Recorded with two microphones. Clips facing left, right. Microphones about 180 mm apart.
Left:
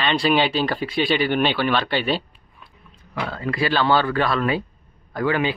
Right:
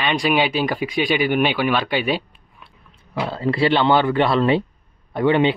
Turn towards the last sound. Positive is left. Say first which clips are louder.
# right 5 dB
turn(degrees=-25)  # may be behind; listen again after turning